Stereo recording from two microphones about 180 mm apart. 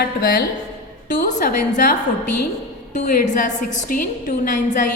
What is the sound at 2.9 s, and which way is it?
A woman's voice, 45° left (ahead or behind).